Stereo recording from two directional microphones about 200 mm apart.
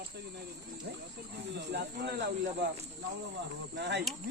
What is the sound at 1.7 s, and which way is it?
Speech, 55° right (ahead or behind).